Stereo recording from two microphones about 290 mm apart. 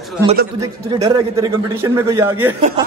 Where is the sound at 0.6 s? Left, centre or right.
Centre.